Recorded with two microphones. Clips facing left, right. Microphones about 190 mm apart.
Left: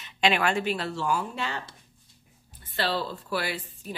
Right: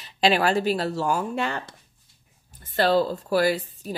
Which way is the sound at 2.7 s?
45° right (ahead or behind).